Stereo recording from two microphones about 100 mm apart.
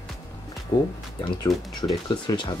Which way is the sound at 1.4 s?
40° left (ahead or behind).